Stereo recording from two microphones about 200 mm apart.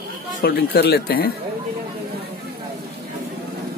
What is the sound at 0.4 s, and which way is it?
Speech, 50° left (ahead or behind).